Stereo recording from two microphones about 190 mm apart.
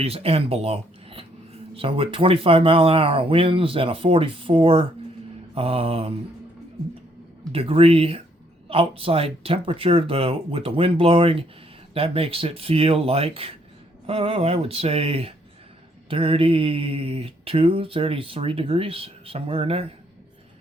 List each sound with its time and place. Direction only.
0.0 s speech: 30° right (ahead or behind)
7.5 s speech: 30° right (ahead or behind)